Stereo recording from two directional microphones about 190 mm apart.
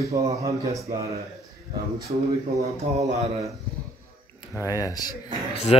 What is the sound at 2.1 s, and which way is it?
Mantra, 35° right (ahead or behind).